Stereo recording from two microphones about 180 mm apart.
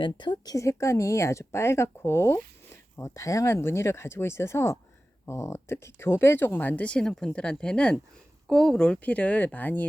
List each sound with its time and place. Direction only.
0.0 s speech: 25° left (ahead or behind); by 9.8 s 10° left (ahead or behind)